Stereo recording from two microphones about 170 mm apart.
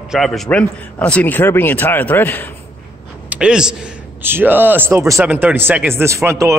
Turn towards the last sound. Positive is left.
turn(degrees=-15)  # may be behind; listen again after turning